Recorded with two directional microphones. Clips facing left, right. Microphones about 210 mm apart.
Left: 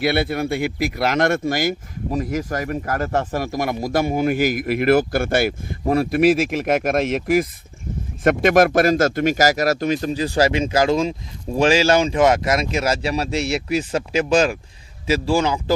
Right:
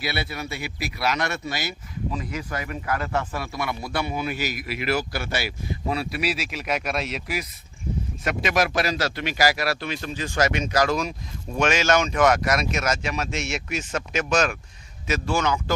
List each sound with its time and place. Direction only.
0.0 s a man's voice: 50° left (ahead or behind); by 15.7 s 30° left (ahead or behind)